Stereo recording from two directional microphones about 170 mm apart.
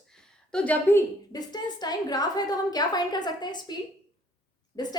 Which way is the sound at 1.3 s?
25° left (ahead or behind).